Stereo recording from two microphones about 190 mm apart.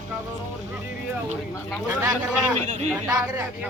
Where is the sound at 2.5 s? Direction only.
35° right (ahead or behind).